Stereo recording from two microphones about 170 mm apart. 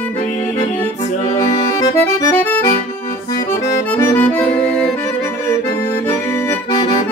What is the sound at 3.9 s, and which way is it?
Accordion, 10° left (ahead or behind).